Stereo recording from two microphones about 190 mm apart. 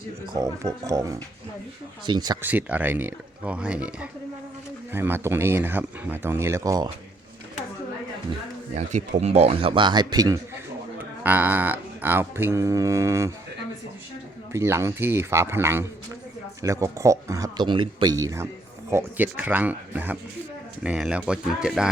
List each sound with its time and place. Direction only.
0.3 s music: 15° right (ahead or behind)
2.0 s speech: 20° right (ahead or behind)
2.4 s music: 10° right (ahead or behind)
8.7 s speech: 40° right (ahead or behind); by 10.4 s 20° right (ahead or behind)
11.2 s music: 10° right (ahead or behind)
14.5 s music: 15° right (ahead or behind)
20.8 s speech: 5° right (ahead or behind)